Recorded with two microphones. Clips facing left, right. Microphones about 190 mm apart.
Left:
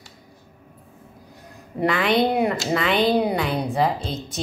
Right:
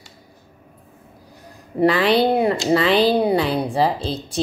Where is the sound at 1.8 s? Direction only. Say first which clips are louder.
Right 4 dB; 35° right (ahead or behind).